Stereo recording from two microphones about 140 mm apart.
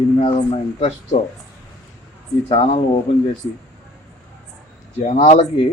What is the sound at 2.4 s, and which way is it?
Speech, 40° left (ahead or behind).